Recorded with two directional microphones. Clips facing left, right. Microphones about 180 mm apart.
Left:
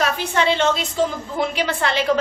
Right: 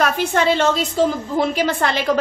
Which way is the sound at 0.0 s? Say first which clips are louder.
Right 3 dB; 45° right (ahead or behind).